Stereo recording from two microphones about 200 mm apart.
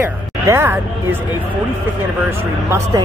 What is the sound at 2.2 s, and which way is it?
Speech, 15° right (ahead or behind).